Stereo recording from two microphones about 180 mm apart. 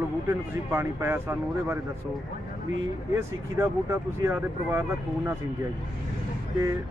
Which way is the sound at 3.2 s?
15° right (ahead or behind).